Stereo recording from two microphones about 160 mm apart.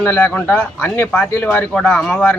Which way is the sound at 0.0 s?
10° left (ahead or behind).